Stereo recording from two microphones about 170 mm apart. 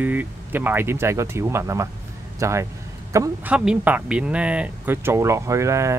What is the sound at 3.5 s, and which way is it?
Speech, 5° right (ahead or behind).